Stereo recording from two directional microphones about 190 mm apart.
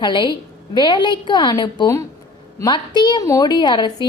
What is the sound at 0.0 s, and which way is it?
A woman's voice, 25° left (ahead or behind).